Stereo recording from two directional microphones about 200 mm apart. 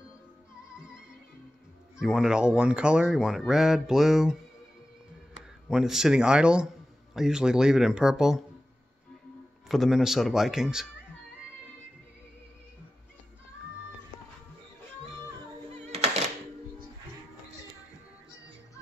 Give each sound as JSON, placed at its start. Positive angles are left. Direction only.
{"t": 0.7, "sound": "music", "side_deg": -5}
{"t": 2.0, "sound": "speech", "side_deg": 0}
{"t": 5.7, "sound": "speech", "side_deg": 0}
{"t": 9.7, "sound": "speech", "side_deg": 0}
{"t": 15.9, "sound": "music", "side_deg": -30}